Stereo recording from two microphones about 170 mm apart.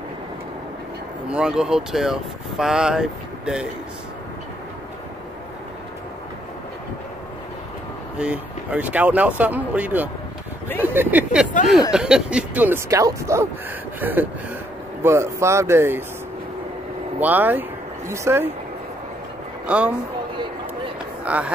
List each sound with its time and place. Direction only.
1.3 s speech: 5° right (ahead or behind)
8.2 s speech: 10° right (ahead or behind)
17.2 s speech: 10° right (ahead or behind)
19.6 s speech: 10° right (ahead or behind)
21.2 s speech: 10° right (ahead or behind)